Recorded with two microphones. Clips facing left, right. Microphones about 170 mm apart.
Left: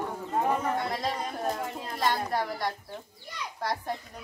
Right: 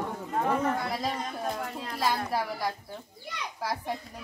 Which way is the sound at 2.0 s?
5° right (ahead or behind).